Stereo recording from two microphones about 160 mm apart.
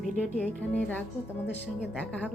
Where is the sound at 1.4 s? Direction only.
90° left.